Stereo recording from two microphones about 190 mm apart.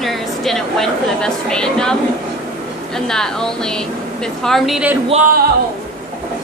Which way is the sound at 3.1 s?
5° left (ahead or behind).